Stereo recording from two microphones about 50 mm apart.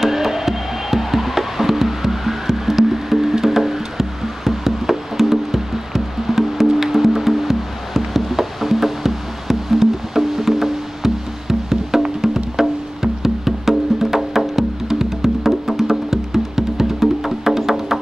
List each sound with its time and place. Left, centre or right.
0.0 s music: centre
12.5 s wood block: centre